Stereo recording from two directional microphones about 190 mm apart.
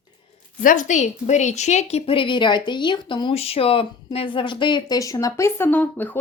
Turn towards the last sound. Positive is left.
turn(degrees=10)  # may be behind; listen again after turning